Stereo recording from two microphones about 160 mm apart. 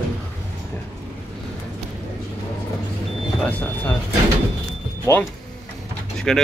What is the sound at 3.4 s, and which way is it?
Speech, 10° left (ahead or behind).